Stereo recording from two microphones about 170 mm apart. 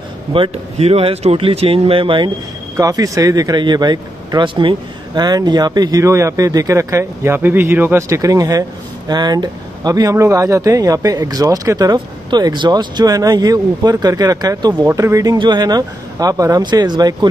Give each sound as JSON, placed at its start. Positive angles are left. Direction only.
{"t": 0.3, "sound": "speech", "side_deg": -35}